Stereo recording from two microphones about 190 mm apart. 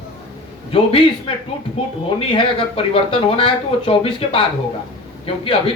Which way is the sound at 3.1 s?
30° left (ahead or behind).